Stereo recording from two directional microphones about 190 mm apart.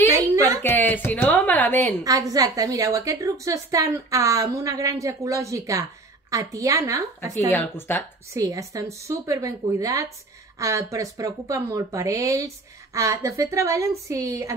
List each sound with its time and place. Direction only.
0.6 s a sound: 10° left (ahead or behind)
2.0 s a woman's voice: 20° right (ahead or behind)
7.2 s speech: 10° left (ahead or behind)
8.3 s a woman's voice: 15° right (ahead or behind)